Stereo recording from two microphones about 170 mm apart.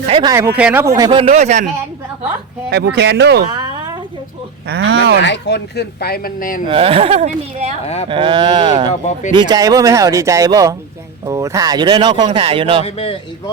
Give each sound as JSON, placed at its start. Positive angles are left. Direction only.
{"t": 0.2, "sound": "speech", "side_deg": -20}
{"t": 1.1, "sound": "speech", "side_deg": -35}
{"t": 2.6, "sound": "speech", "side_deg": -80}
{"t": 3.5, "sound": "a sound", "side_deg": -25}
{"t": 4.7, "sound": "speech", "side_deg": -75}
{"t": 5.2, "sound": "speech", "side_deg": 90}
{"t": 6.7, "sound": "speech", "side_deg": -35}
{"t": 8.9, "sound": "speech", "side_deg": 40}
{"t": 9.3, "sound": "speech", "side_deg": -25}
{"t": 12.8, "sound": "a man's voice", "side_deg": 35}